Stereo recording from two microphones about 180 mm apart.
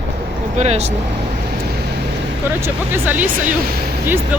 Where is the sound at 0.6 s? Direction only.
35° right (ahead or behind).